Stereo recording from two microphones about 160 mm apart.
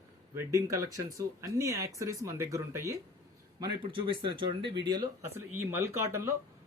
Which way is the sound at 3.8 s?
30° right (ahead or behind).